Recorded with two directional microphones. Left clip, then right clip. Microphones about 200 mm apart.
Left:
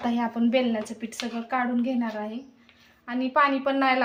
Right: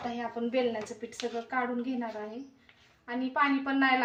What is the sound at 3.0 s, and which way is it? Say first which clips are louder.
Speech: left 6 dB; 45° left (ahead or behind).